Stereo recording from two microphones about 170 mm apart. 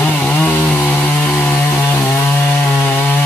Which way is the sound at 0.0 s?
10° left (ahead or behind).